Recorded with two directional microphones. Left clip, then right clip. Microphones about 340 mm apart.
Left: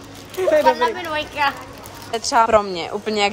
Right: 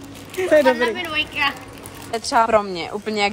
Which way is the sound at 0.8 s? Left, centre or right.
Centre.